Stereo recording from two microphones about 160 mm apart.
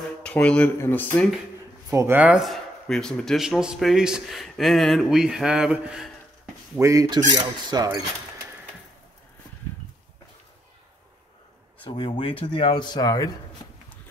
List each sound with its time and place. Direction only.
0.2 s speech: 5° left (ahead or behind)
1.9 s speech: 15° right (ahead or behind)
6.8 s speech: 20° right (ahead or behind)
11.8 s speech: 30° left (ahead or behind)